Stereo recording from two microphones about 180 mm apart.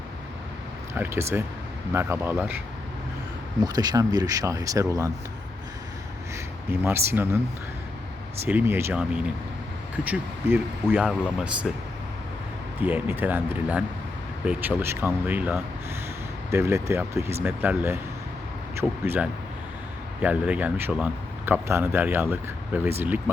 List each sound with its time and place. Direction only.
0.9 s speech: 15° right (ahead or behind)
3.6 s speech: 20° right (ahead or behind)
6.3 s speech: 15° right (ahead or behind)
8.4 s speech: 10° right (ahead or behind)
11.0 s speech: centre (ahead or behind)
12.8 s speech: 10° right (ahead or behind)